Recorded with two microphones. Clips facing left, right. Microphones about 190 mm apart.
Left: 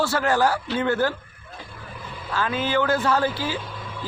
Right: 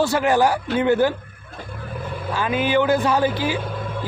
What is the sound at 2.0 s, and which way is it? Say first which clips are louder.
Vehicle: right 9 dB; 55° right (ahead or behind).